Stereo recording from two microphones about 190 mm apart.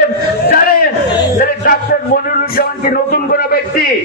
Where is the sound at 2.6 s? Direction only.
50° left (ahead or behind).